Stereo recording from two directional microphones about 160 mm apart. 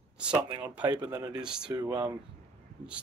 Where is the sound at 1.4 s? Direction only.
5° right (ahead or behind).